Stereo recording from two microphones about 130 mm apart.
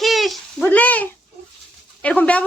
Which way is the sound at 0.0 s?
Centre (ahead or behind).